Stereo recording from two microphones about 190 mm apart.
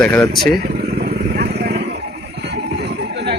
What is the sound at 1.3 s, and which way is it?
Vehicle, 60° right (ahead or behind).